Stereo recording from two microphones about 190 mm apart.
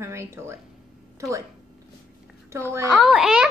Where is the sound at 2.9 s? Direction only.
Centre (ahead or behind).